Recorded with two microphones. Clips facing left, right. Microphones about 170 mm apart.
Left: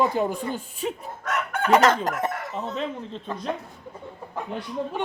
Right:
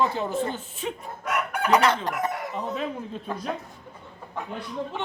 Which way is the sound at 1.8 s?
45° left (ahead or behind).